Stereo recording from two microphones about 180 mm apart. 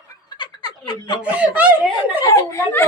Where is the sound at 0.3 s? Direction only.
25° left (ahead or behind).